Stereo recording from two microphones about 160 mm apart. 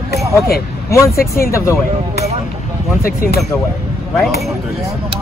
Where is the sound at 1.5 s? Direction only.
15° left (ahead or behind).